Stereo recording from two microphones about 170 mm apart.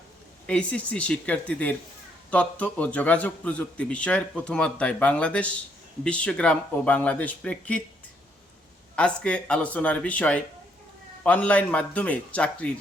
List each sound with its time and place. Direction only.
0.4 s a man's voice: 5° left (ahead or behind)
9.0 s a man's voice: 5° left (ahead or behind)